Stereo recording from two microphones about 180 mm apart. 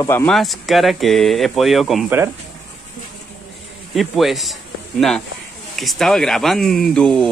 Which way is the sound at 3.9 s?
Centre (ahead or behind).